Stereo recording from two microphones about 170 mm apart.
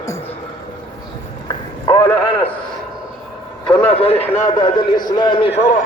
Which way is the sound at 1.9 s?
10° left (ahead or behind).